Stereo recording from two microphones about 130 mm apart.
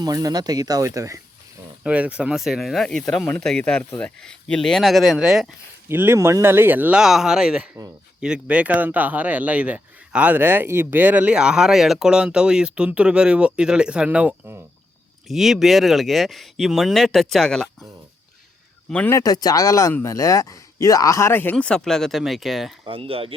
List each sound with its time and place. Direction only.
0.0 s speech: 30° right (ahead or behind)
1.8 s speech: 10° right (ahead or behind)
5.9 s speech: 15° right (ahead or behind)
15.3 s speech: centre (ahead or behind)
18.9 s speech: 10° left (ahead or behind)
19.1 s speech: 30° left (ahead or behind); by 22.7 s centre (ahead or behind)
22.9 s speech: 45° right (ahead or behind)